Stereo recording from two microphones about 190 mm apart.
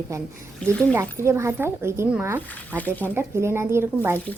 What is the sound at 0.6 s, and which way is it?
Speech, 5° left (ahead or behind).